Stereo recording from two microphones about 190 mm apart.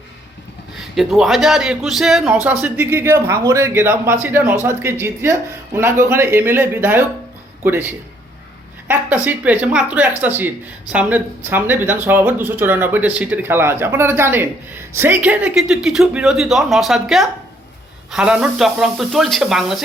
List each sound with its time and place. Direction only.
0.8 s speech: centre (ahead or behind)